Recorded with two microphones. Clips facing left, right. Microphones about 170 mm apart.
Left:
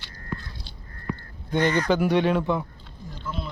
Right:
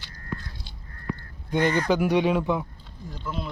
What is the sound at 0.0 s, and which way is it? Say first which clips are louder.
Biting: even; 40° right (ahead or behind).